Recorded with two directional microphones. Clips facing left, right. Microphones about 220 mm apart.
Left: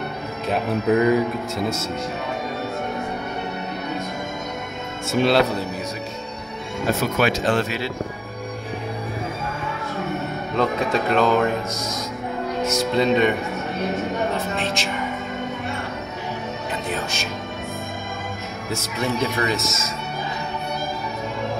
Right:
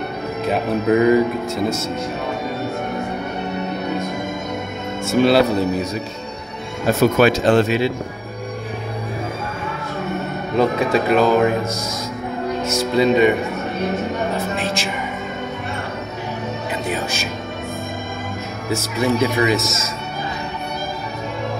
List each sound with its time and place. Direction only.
0.5 s speech: centre (ahead or behind)
5.0 s speech: centre (ahead or behind)
7.0 s speech: 40° right (ahead or behind); by 7.9 s 20° right (ahead or behind)
10.5 s speech: 5° right (ahead or behind)
12.9 s speech: 5° right (ahead or behind)
14.5 s speech: 5° right (ahead or behind)
18.7 s speech: 5° right (ahead or behind)